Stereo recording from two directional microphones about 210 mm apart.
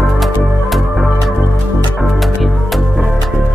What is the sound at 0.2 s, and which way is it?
Music, centre (ahead or behind).